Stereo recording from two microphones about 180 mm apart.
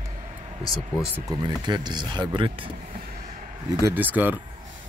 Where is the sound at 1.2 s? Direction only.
25° right (ahead or behind).